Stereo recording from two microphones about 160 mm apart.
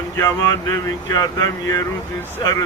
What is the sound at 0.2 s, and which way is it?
Speech, 20° left (ahead or behind).